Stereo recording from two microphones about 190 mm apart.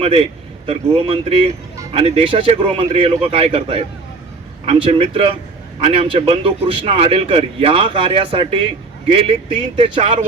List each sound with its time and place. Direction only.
0.0 s a man's voice: 30° right (ahead or behind)